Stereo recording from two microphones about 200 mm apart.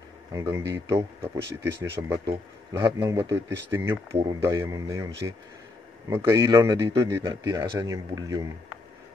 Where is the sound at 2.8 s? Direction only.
20° right (ahead or behind).